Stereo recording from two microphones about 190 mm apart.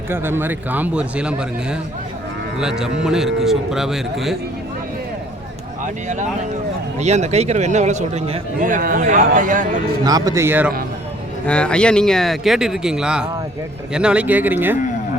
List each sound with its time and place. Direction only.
0.1 s a man's voice: 10° right (ahead or behind)
5.8 s a man's voice: 40° right (ahead or behind)
10.1 s a man's voice: 20° right (ahead or behind)
11.4 s a man's voice: 5° left (ahead or behind); by 14.8 s 10° right (ahead or behind)